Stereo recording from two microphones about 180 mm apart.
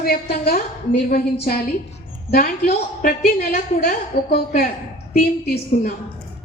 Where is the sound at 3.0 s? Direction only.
50° left (ahead or behind).